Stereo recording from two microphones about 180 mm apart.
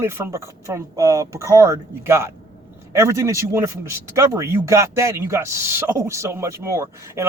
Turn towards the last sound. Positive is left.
turn(degrees=-15)  # may be behind; listen again after turning